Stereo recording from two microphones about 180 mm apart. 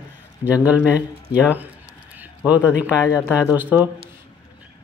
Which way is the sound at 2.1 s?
10° right (ahead or behind).